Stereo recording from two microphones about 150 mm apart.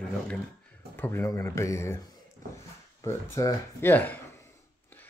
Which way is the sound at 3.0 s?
20° left (ahead or behind).